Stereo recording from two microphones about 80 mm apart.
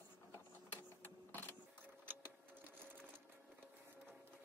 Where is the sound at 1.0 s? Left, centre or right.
Left.